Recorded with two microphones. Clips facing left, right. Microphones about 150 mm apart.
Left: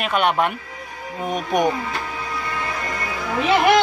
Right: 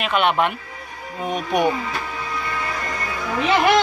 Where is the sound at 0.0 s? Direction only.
45° left (ahead or behind).